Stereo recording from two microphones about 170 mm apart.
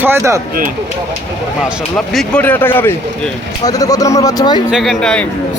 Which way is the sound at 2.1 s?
10° left (ahead or behind).